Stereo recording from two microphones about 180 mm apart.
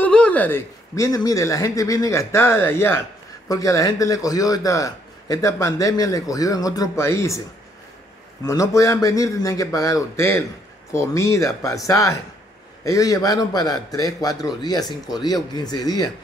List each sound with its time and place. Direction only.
0.0 s a man's voice: 5° left (ahead or behind)
8.5 s a man's voice: 15° left (ahead or behind)